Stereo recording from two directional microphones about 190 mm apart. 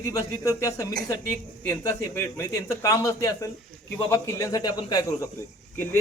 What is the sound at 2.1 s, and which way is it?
A man's voice, 15° left (ahead or behind).